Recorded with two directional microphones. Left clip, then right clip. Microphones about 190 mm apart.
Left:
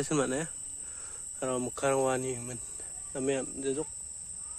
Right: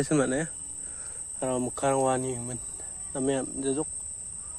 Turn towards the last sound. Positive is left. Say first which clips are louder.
# right 3 dB
turn(degrees=0)  # may be behind; listen again after turning